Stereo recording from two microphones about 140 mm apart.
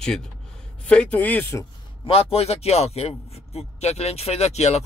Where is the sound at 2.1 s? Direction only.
45° left (ahead or behind).